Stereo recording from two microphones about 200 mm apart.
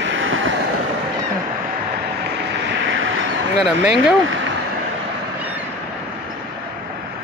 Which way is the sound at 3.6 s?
5° right (ahead or behind).